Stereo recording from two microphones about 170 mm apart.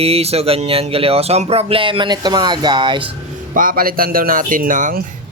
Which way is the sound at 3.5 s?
55° right (ahead or behind).